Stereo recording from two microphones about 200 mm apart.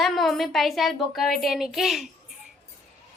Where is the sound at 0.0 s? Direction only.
Centre (ahead or behind).